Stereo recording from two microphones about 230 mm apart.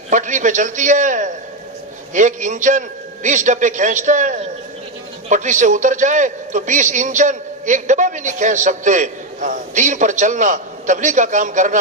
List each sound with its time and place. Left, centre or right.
0.1 s a man's voice: right